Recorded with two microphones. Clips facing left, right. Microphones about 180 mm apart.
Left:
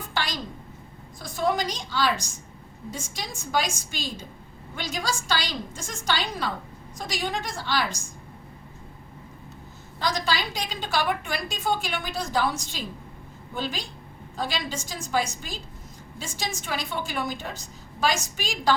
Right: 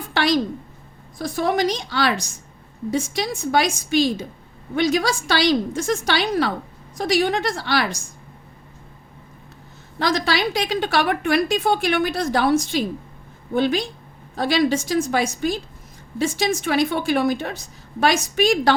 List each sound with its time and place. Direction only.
0.1 s a sound: 70° right (ahead or behind)
1.2 s a woman's voice: 65° right (ahead or behind)
10.0 s a woman's voice: 75° right (ahead or behind)